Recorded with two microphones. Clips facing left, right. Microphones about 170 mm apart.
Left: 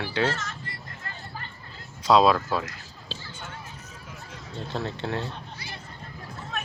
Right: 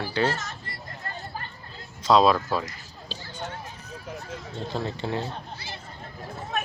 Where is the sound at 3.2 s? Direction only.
40° right (ahead or behind).